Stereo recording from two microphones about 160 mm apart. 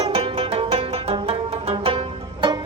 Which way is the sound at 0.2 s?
35° right (ahead or behind).